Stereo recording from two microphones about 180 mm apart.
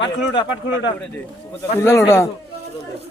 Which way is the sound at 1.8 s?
15° left (ahead or behind).